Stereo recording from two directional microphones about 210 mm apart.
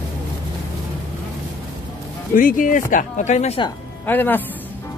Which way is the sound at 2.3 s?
40° left (ahead or behind).